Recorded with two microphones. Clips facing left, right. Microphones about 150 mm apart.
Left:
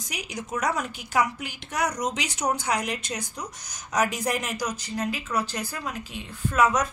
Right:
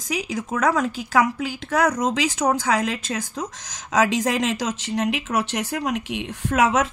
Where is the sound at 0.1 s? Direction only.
90° right.